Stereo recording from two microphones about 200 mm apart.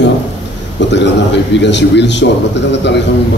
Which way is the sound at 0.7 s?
60° left (ahead or behind).